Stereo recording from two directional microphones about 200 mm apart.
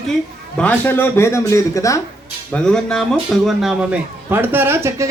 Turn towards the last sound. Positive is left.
turn(degrees=-10)  # may be behind; listen again after turning